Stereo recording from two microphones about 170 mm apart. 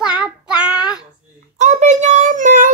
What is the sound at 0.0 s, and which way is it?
Child singing, 5° right (ahead or behind).